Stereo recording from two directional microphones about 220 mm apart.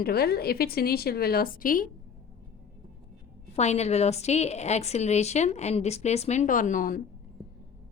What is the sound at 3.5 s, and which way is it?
A woman's voice, 30° left (ahead or behind).